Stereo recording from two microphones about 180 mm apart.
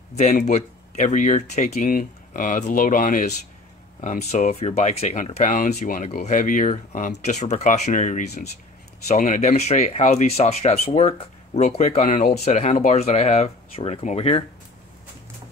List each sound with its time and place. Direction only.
0.1 s speech: 40° left (ahead or behind)